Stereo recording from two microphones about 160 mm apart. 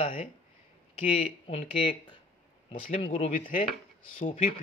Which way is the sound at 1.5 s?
40° left (ahead or behind).